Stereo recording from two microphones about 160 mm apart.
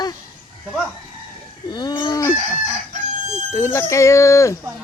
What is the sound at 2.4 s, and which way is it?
Chicken, 45° right (ahead or behind).